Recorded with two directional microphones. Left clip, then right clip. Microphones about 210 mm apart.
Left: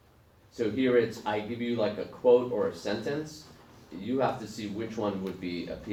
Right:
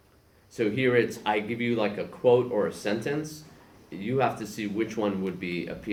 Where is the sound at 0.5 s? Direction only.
40° right (ahead or behind).